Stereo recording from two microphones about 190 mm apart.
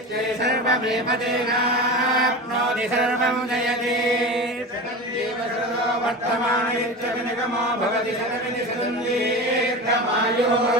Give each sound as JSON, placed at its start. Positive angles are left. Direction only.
{"t": 0.4, "sound": "chant", "side_deg": -60}